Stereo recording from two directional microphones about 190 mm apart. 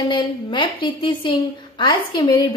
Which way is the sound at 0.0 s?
20° left (ahead or behind).